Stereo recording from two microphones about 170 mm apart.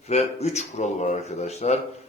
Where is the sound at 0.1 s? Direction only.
40° left (ahead or behind).